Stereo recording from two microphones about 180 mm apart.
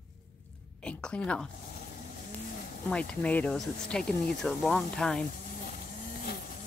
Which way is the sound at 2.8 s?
5° left (ahead or behind).